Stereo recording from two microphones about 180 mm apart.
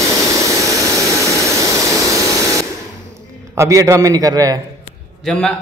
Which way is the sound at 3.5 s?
20° right (ahead or behind).